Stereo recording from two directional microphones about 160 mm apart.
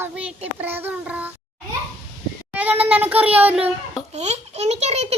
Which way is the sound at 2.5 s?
10° right (ahead or behind).